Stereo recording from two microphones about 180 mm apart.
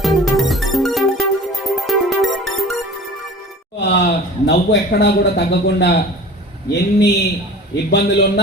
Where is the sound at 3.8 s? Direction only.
70° left (ahead or behind).